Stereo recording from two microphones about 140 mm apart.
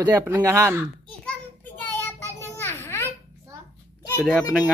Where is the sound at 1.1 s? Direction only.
5° left (ahead or behind).